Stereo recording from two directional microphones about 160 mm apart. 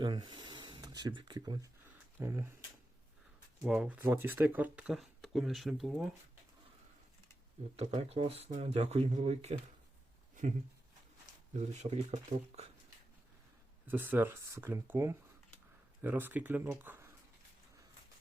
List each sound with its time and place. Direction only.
0.0 s speech: 30° right (ahead or behind)
2.1 s speech: 15° right (ahead or behind)
3.6 s speech: 5° right (ahead or behind)
7.8 s speech: 35° right (ahead or behind)
11.5 s speech: 45° right (ahead or behind)
13.8 s speech: 10° right (ahead or behind)